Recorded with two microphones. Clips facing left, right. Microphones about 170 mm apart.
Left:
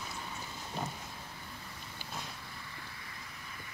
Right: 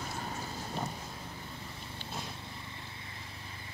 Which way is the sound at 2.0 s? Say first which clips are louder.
Right 2 dB; 25° right (ahead or behind).